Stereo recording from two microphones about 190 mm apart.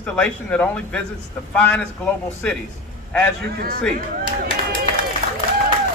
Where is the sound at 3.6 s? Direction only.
50° right (ahead or behind).